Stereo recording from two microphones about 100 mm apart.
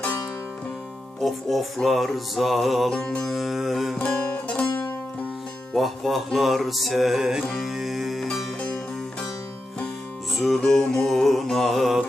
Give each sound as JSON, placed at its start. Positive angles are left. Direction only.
{"t": 1.2, "sound": "music", "side_deg": 0}
{"t": 4.0, "sound": "music", "side_deg": 15}
{"t": 10.3, "sound": "music", "side_deg": 0}